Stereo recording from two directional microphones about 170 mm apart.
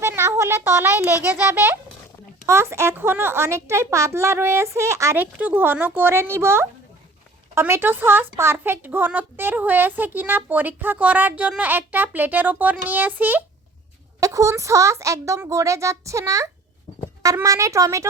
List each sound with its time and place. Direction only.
0.2 s a woman's voice: 15° right (ahead or behind)